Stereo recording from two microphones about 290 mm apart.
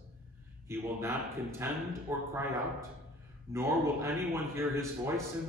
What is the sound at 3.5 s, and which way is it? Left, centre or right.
A man's voice, centre.